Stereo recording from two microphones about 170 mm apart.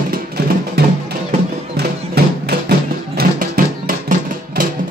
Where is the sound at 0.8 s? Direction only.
70° right (ahead or behind).